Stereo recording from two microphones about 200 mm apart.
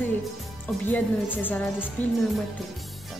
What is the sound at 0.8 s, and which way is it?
Speech, 10° left (ahead or behind).